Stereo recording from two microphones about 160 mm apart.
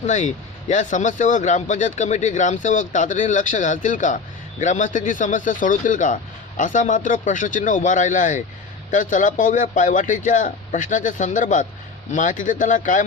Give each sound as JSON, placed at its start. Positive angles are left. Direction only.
{"t": 0.0, "sound": "a man's voice", "side_deg": 50}